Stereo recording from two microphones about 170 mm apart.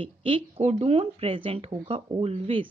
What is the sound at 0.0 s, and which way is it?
Speech, 30° right (ahead or behind).